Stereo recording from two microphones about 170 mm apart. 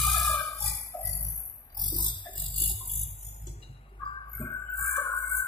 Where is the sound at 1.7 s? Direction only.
25° left (ahead or behind).